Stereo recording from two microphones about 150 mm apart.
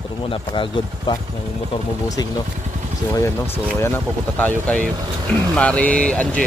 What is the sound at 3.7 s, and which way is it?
Speech, 15° left (ahead or behind).